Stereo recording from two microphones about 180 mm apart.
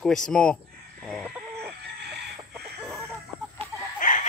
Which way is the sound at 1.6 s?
65° right (ahead or behind).